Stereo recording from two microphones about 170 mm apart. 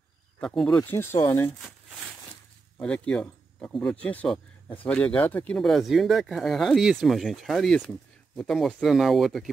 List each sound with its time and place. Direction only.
0.4 s speech: 5° left (ahead or behind)
0.7 s speech: 15° left (ahead or behind)
2.8 s speech: 5° left (ahead or behind)